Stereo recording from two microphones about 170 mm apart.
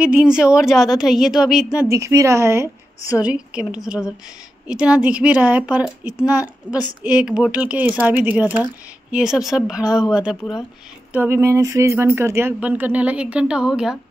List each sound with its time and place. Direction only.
0.0 s speech: 5° right (ahead or behind)
1.9 s speech: 15° right (ahead or behind)
11.1 s speech: 15° right (ahead or behind)